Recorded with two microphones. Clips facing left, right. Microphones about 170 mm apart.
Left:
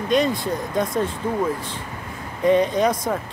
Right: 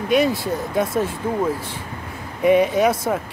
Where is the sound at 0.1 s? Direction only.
5° right (ahead or behind).